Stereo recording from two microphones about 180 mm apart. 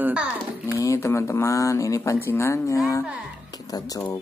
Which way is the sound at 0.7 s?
15° left (ahead or behind).